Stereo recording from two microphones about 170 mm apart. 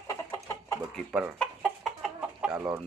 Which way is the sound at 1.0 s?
10° right (ahead or behind).